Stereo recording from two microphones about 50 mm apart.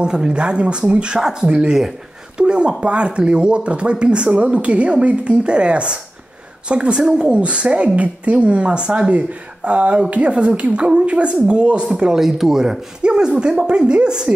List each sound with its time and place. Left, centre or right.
0.0 s a woman's voice: centre